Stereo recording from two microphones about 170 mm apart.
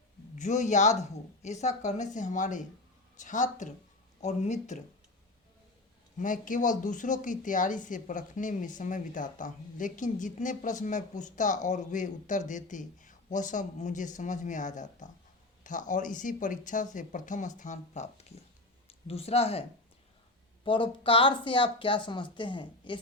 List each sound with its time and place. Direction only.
0.3 s speech: 45° left (ahead or behind)
6.1 s speech: 50° left (ahead or behind)
20.7 s speech: 30° left (ahead or behind)